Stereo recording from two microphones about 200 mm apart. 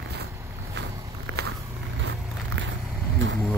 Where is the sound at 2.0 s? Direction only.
65° right (ahead or behind).